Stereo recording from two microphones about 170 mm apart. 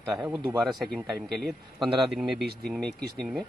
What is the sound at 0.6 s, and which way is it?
Speech, centre (ahead or behind).